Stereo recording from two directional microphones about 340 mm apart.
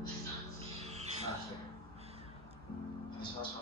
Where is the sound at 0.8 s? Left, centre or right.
Centre.